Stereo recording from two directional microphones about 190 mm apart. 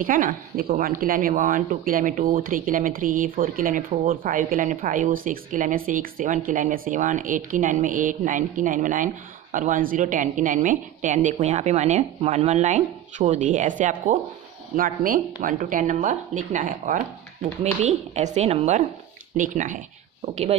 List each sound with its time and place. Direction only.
0.0 s a woman's voice: 45° right (ahead or behind)